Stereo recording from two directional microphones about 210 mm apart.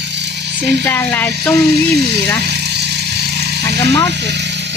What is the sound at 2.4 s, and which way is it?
Vehicle, 50° right (ahead or behind).